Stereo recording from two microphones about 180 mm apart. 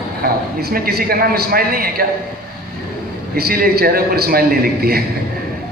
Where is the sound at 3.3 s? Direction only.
55° right (ahead or behind).